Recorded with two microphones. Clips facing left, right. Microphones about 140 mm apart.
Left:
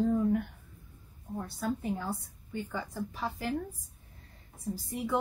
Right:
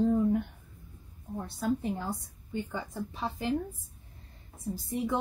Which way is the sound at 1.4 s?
25° right (ahead or behind).